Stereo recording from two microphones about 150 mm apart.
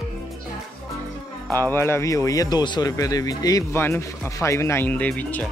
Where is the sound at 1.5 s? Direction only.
15° left (ahead or behind).